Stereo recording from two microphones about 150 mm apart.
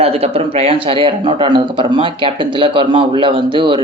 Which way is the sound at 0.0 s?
40° right (ahead or behind).